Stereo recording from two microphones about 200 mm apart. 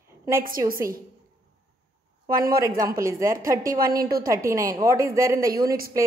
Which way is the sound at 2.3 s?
45° right (ahead or behind).